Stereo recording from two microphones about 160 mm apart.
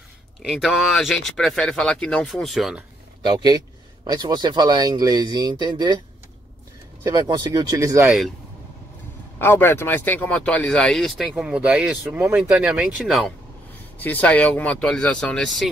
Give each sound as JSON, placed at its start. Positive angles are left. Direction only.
{"t": 0.5, "sound": "speech", "side_deg": 0}
{"t": 3.2, "sound": "speech", "side_deg": -25}
{"t": 7.0, "sound": "speech", "side_deg": -25}
{"t": 9.4, "sound": "speech", "side_deg": 15}
{"t": 13.9, "sound": "speech", "side_deg": 10}